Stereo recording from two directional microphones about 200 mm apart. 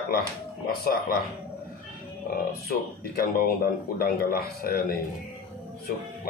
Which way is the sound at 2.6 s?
50° left (ahead or behind).